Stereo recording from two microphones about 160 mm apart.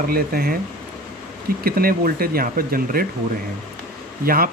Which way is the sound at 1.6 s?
65° right (ahead or behind).